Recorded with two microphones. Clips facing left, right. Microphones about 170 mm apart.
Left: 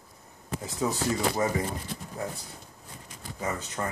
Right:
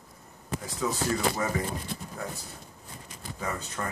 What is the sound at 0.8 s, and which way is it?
Speech, 30° left (ahead or behind).